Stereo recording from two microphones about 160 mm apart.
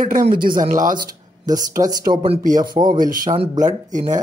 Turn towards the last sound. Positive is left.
turn(degrees=-50)  # may be behind; listen again after turning